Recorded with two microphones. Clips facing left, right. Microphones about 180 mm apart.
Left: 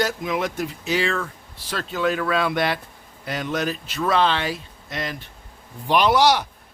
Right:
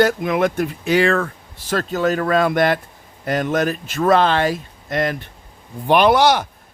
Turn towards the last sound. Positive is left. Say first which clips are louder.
# right 4 dB
turn(degrees=-55)  # may be behind; listen again after turning